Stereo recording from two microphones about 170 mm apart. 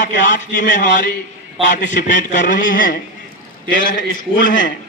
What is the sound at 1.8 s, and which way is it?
A man's voice, 50° left (ahead or behind).